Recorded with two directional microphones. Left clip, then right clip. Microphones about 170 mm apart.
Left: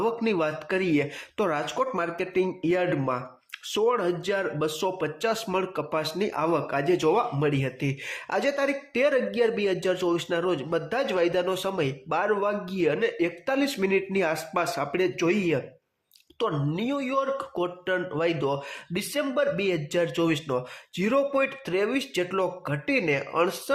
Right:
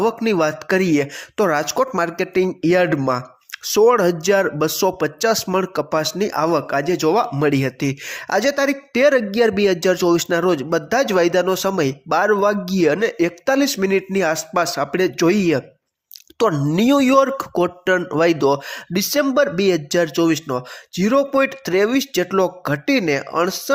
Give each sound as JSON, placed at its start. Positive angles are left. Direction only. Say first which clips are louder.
{"t": 0.0, "sound": "speech", "louder": "right 8 dB", "side_deg": -35}
{"t": 16.4, "sound": "speech", "louder": "right 11 dB", "side_deg": -50}